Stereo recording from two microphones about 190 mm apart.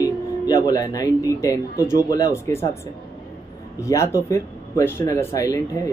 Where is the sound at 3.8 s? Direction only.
15° left (ahead or behind).